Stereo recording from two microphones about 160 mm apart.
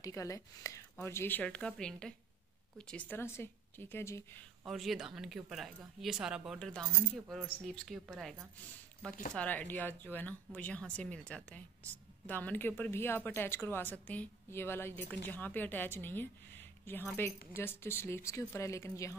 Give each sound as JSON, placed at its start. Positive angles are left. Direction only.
{"t": 0.0, "sound": "a woman's voice", "side_deg": 20}
{"t": 4.6, "sound": "a woman's voice", "side_deg": 0}